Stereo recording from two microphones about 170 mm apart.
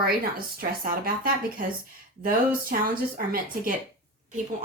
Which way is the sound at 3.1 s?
55° right (ahead or behind).